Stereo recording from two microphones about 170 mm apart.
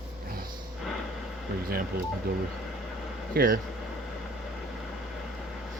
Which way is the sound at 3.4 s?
60° right (ahead or behind).